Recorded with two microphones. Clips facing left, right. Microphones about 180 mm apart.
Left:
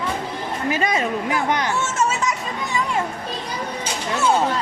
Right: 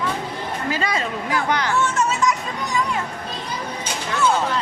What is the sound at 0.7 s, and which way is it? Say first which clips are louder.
A woman's voice: left 3 dB; 20° left (ahead or behind).